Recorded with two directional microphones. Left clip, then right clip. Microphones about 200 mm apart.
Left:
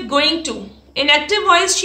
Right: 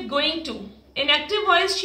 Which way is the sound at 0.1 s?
45° left (ahead or behind).